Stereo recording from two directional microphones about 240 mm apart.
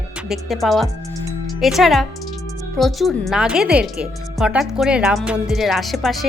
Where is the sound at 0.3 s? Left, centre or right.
Centre.